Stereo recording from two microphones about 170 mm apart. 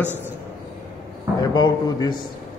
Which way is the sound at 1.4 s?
25° left (ahead or behind).